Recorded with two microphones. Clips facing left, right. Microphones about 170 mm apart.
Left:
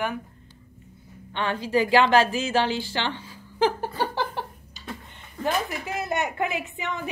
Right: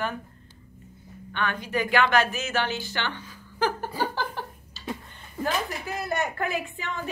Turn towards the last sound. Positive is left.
turn(degrees=20)  # may be behind; listen again after turning